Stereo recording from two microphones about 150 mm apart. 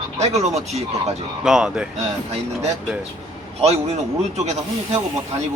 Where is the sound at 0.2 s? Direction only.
50° right (ahead or behind).